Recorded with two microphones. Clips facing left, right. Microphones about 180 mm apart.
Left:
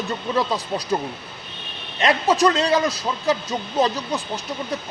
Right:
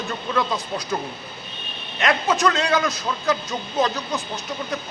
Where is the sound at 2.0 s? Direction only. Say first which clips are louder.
Left 3 dB; 35° left (ahead or behind).